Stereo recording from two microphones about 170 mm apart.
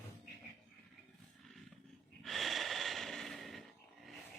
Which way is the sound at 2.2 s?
Centre (ahead or behind).